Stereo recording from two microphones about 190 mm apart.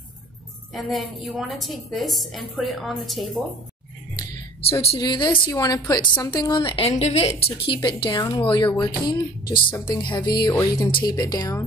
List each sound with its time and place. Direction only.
0.7 s a woman's voice: centre (ahead or behind)
4.8 s a woman's voice: 25° left (ahead or behind)